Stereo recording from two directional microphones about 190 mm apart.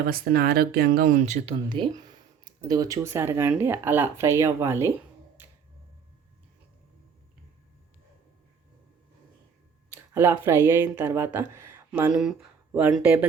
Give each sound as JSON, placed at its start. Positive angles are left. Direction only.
{"t": 0.1, "sound": "speech", "side_deg": -55}
{"t": 1.7, "sound": "speech", "side_deg": -25}
{"t": 9.9, "sound": "speech", "side_deg": -10}